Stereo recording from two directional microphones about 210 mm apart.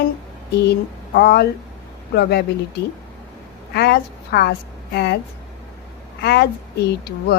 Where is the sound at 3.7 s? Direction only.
50° left (ahead or behind).